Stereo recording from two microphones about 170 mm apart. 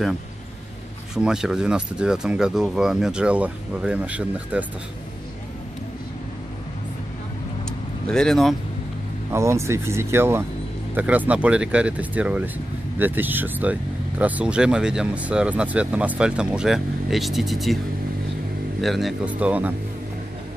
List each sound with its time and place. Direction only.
1.1 s speech: 5° right (ahead or behind)
8.1 s speech: 5° left (ahead or behind)
9.3 s speech: 15° right (ahead or behind); by 17.7 s centre (ahead or behind)
18.8 s speech: centre (ahead or behind)